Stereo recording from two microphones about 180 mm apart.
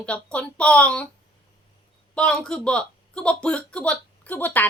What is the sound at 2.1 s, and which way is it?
A woman's voice, 5° left (ahead or behind).